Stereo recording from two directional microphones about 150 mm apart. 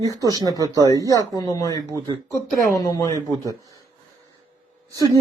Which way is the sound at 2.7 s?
25° left (ahead or behind).